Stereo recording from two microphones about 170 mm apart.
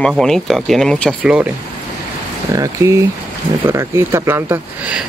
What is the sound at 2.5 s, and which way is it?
Speech, 20° right (ahead or behind).